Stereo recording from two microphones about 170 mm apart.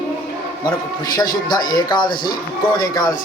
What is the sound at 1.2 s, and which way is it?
Speech, 25° left (ahead or behind).